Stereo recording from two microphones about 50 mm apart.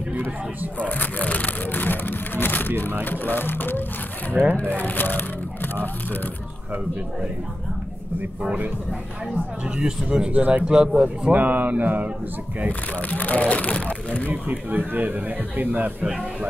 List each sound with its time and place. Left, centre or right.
0.7 s a sound: left
3.0 s speech: left
4.6 s speech: left
9.8 s speech: centre
10.3 s a man's voice: right
10.6 s speech: centre
11.3 s a man's voice: right
13.1 s speech: left
14.3 s a man's voice: right